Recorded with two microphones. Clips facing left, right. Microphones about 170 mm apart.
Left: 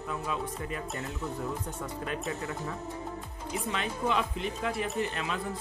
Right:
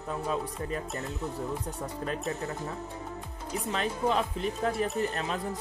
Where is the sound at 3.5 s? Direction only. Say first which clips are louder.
Right 2 dB; 35° right (ahead or behind).